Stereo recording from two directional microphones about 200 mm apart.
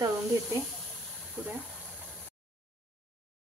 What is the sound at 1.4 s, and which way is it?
Speech, 5° right (ahead or behind).